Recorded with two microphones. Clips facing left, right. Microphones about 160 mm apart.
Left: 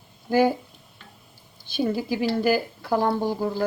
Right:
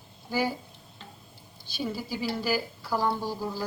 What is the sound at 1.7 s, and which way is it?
Speech, 55° left (ahead or behind).